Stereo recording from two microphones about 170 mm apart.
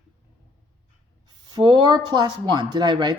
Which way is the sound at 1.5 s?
25° right (ahead or behind).